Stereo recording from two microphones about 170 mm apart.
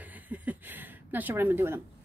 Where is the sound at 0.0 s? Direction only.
10° right (ahead or behind).